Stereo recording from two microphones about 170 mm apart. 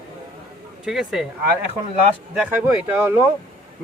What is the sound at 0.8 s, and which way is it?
Speech, 5° right (ahead or behind).